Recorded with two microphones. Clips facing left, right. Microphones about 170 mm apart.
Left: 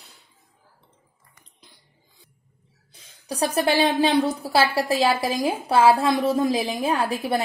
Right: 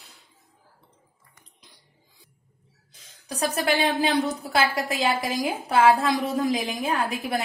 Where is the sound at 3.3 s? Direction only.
30° left (ahead or behind).